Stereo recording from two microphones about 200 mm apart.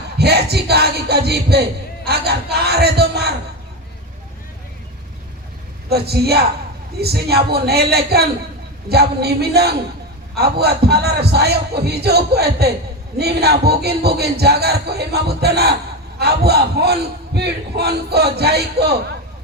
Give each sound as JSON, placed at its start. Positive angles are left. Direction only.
{"t": 0.2, "sound": "a man's voice", "side_deg": -55}
{"t": 5.9, "sound": "a man's voice", "side_deg": -55}